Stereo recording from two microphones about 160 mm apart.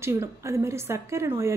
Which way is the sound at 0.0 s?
15° right (ahead or behind).